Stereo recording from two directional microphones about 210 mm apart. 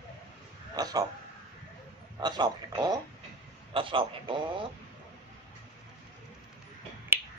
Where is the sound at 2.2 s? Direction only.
20° right (ahead or behind).